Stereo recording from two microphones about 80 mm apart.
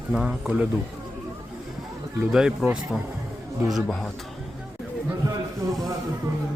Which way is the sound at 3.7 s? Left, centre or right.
Centre.